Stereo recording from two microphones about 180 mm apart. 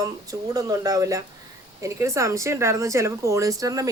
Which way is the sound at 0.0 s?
20° right (ahead or behind).